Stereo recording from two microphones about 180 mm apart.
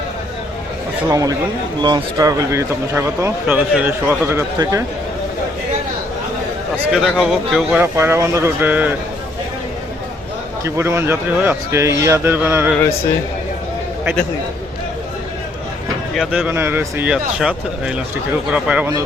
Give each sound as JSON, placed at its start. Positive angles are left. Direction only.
{"t": 1.1, "sound": "a man's voice", "side_deg": -20}
{"t": 6.9, "sound": "speech", "side_deg": 0}
{"t": 10.6, "sound": "speech", "side_deg": -15}
{"t": 16.1, "sound": "speech", "side_deg": 0}